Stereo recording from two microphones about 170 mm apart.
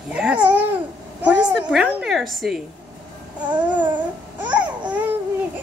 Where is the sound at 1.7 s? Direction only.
5° right (ahead or behind).